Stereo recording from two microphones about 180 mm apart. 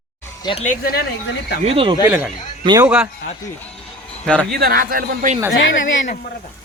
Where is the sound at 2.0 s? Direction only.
10° right (ahead or behind).